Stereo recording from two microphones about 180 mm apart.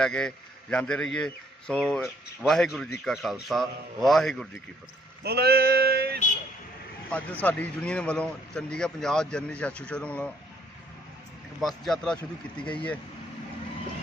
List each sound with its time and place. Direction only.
0.0 s a man's voice: 5° left (ahead or behind)
5.2 s male singing: 60° right (ahead or behind)
7.1 s a man's voice: 10° left (ahead or behind)
11.6 s a man's voice: 5° left (ahead or behind)